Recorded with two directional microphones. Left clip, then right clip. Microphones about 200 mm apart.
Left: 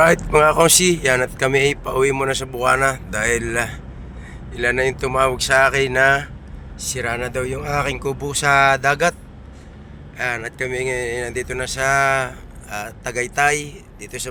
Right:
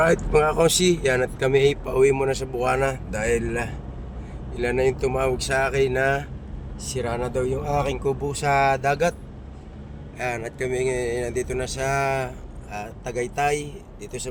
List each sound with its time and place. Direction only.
0.0 s speech: 5° left (ahead or behind)
10.2 s speech: 5° right (ahead or behind)